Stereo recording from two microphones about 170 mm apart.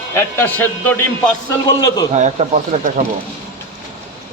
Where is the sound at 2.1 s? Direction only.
45° right (ahead or behind).